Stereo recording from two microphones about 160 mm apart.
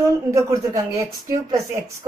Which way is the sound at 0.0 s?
20° right (ahead or behind).